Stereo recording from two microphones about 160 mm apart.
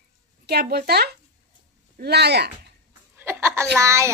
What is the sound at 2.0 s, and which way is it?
Speech, 90° right.